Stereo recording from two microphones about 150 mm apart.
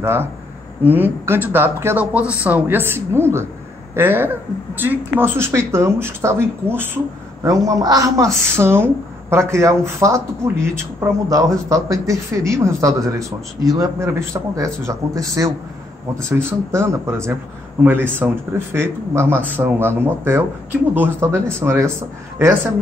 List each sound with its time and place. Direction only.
0.0 s speech: 15° right (ahead or behind)